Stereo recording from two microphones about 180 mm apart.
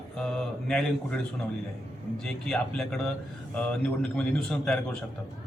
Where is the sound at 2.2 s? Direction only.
5° left (ahead or behind).